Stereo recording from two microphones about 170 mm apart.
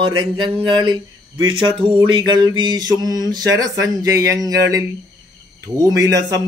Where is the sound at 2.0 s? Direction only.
30° right (ahead or behind).